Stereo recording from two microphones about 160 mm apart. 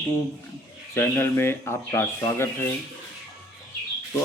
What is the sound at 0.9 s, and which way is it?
Speech, 15° left (ahead or behind).